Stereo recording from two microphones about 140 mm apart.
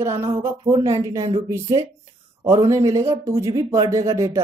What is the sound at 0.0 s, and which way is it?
Speech, 20° right (ahead or behind).